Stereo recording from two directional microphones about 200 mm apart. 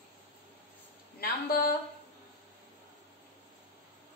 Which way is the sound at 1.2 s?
50° left (ahead or behind).